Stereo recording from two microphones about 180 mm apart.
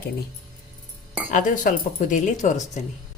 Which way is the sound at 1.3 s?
45° left (ahead or behind).